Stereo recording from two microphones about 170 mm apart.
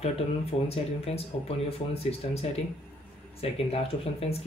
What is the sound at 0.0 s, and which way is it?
Speech, 35° left (ahead or behind).